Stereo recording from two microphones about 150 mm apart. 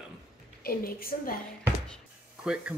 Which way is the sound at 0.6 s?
80° left.